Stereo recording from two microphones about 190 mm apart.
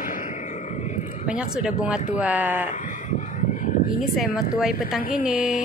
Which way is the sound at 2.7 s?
40° left (ahead or behind).